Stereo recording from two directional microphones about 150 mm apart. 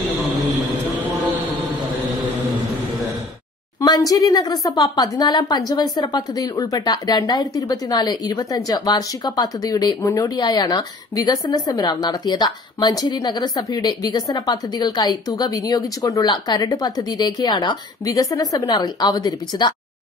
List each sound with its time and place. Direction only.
3.8 s a woman's voice: 25° left (ahead or behind)